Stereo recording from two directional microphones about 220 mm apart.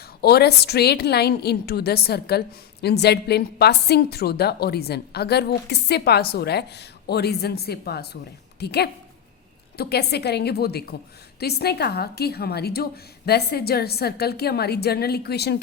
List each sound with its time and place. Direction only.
0.2 s a woman's voice: 45° left (ahead or behind)